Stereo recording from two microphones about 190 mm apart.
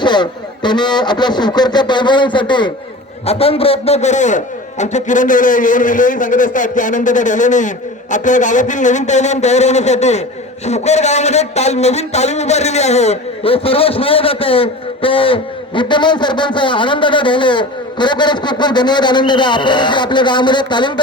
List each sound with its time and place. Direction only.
0.0 s a man's voice: 25° left (ahead or behind)